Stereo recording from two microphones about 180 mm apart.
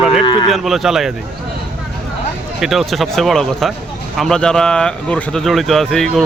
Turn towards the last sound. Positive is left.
turn(degrees=0)  # may be behind; listen again after turning